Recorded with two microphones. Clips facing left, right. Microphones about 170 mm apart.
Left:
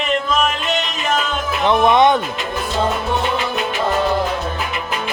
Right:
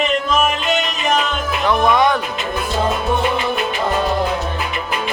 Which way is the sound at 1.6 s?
20° left (ahead or behind).